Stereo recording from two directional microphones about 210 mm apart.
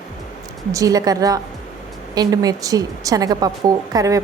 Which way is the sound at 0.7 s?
15° right (ahead or behind).